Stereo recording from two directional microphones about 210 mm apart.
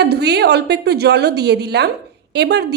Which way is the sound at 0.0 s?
50° right (ahead or behind).